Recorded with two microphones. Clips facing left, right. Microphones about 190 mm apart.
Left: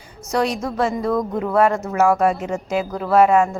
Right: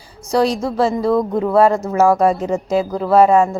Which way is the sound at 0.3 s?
35° right (ahead or behind).